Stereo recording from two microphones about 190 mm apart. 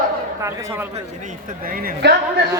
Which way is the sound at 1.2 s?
45° right (ahead or behind).